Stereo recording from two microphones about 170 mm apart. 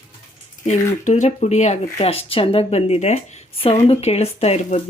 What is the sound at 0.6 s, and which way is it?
Speech, 45° left (ahead or behind).